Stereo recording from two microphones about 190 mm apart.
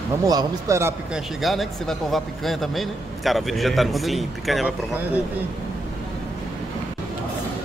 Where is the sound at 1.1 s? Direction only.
Centre (ahead or behind).